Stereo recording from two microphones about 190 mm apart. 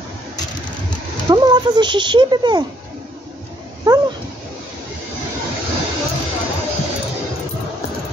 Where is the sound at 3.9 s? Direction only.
20° right (ahead or behind).